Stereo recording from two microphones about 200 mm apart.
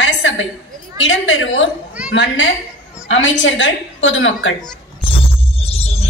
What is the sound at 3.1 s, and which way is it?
A woman's voice, 65° left (ahead or behind).